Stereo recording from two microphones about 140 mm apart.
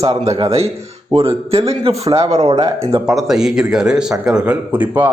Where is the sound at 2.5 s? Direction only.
35° right (ahead or behind).